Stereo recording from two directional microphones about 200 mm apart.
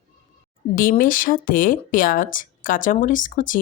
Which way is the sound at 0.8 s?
45° left (ahead or behind).